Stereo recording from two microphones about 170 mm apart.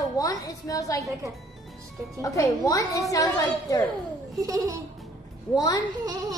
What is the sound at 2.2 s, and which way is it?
A woman's voice, 20° left (ahead or behind).